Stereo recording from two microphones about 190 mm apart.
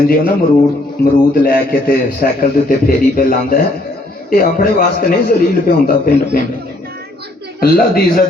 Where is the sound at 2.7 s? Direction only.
50° left (ahead or behind).